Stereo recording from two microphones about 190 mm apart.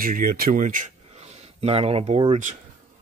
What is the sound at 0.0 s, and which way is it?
Speech, 50° right (ahead or behind).